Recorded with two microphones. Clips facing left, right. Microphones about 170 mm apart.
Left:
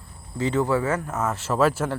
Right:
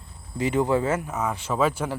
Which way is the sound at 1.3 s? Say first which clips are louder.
Left 3 dB; 5° left (ahead or behind).